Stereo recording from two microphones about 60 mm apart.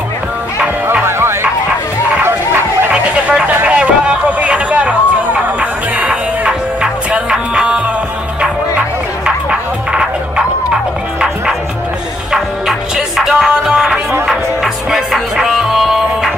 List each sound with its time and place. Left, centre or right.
1.0 s music: right
3.6 s vehicle: centre
9.2 s music: centre
12.3 s music: centre